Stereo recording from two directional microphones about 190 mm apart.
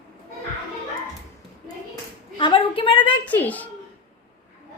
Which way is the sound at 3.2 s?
10° left (ahead or behind).